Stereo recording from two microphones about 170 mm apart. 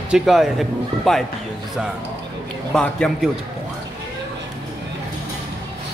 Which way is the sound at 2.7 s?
5° left (ahead or behind).